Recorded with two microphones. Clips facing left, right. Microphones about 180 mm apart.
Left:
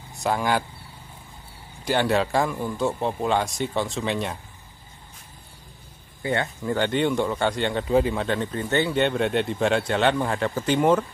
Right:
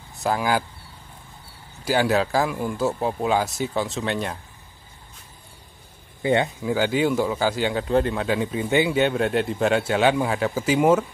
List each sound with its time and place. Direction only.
0.1 s speech: centre (ahead or behind)
1.9 s speech: 5° right (ahead or behind)
6.2 s speech: 20° right (ahead or behind)
6.6 s speech: 5° right (ahead or behind)